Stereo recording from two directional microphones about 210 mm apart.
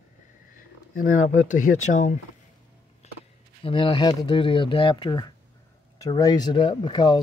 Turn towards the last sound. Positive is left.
turn(degrees=20)  # may be behind; listen again after turning